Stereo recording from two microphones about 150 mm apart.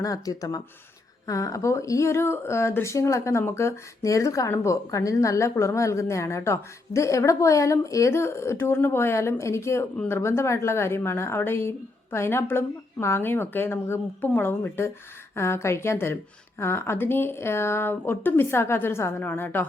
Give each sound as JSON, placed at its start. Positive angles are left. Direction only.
{"t": 0.0, "sound": "speech", "side_deg": 25}